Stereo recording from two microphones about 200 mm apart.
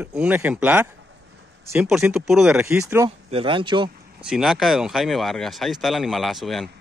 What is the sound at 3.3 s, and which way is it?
Speech, 25° right (ahead or behind).